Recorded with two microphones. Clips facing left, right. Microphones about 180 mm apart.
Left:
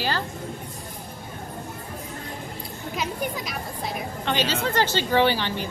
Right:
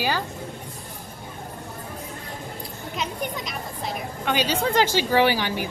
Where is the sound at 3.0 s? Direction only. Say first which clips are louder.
Left 1 dB; centre (ahead or behind).